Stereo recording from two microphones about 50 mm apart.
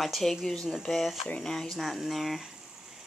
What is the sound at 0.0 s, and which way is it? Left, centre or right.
Speech, centre.